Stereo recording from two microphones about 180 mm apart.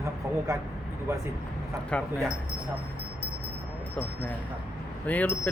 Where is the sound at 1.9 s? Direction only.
Centre (ahead or behind).